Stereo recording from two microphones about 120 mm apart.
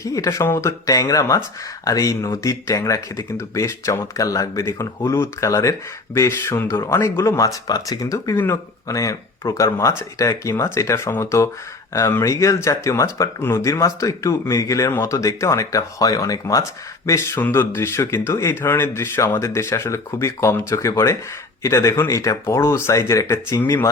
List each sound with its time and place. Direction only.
0.0 s speech: 25° left (ahead or behind)